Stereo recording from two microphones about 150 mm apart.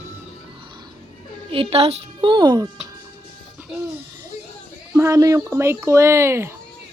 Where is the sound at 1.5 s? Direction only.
40° right (ahead or behind).